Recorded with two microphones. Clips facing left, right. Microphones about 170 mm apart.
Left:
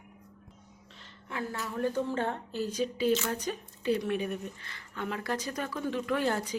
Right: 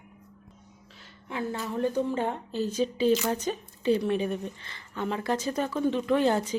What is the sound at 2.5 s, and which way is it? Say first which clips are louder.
Speech: right 4 dB; 20° right (ahead or behind).